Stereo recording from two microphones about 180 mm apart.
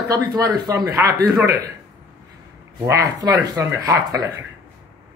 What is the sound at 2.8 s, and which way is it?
Speech, 20° right (ahead or behind).